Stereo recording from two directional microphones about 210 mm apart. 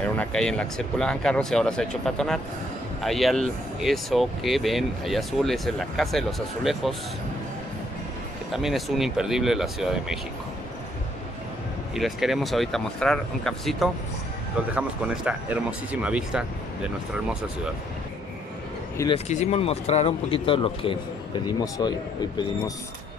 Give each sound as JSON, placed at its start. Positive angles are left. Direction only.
{"t": 0.0, "sound": "speech", "side_deg": 5}
{"t": 8.5, "sound": "speech", "side_deg": 0}
{"t": 11.9, "sound": "speech", "side_deg": 0}
{"t": 19.1, "sound": "speech", "side_deg": 35}